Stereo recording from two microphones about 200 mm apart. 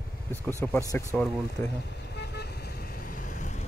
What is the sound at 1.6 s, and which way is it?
Vehicle, 55° left (ahead or behind).